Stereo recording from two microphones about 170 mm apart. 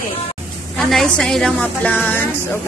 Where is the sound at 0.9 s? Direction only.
5° left (ahead or behind).